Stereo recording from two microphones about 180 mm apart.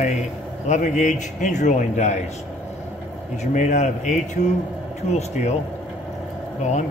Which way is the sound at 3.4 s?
40° left (ahead or behind).